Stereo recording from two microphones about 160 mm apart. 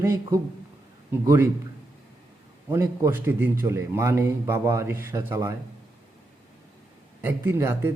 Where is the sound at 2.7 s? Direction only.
15° right (ahead or behind).